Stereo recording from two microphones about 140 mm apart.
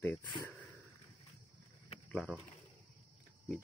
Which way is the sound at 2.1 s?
Centre (ahead or behind).